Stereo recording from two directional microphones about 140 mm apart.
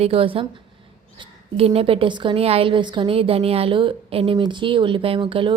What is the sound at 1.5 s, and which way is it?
A woman's voice, 45° right (ahead or behind).